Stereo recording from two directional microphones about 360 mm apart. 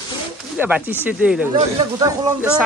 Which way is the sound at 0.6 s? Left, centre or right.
Centre.